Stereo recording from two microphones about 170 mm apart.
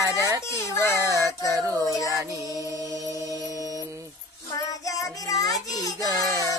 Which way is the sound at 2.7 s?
20° right (ahead or behind).